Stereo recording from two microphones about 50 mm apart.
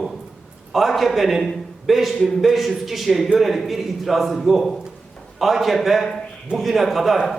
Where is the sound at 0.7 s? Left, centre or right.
Centre.